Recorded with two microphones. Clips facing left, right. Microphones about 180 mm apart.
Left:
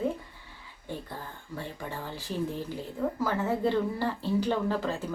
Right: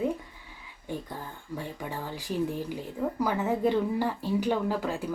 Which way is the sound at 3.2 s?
15° right (ahead or behind).